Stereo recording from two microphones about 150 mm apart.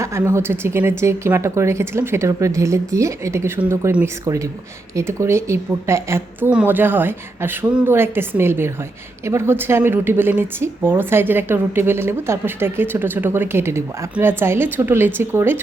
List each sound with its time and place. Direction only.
0.0 s speech: 15° right (ahead or behind)